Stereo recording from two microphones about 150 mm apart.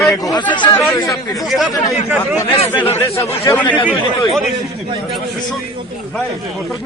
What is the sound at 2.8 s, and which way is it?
Speech, 15° left (ahead or behind).